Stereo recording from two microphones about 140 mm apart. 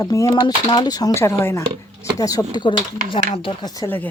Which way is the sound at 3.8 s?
25° left (ahead or behind).